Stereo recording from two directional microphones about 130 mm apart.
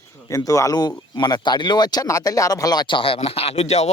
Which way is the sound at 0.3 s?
25° left (ahead or behind).